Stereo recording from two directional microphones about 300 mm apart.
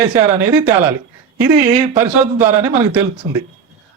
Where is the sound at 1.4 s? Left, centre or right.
Centre.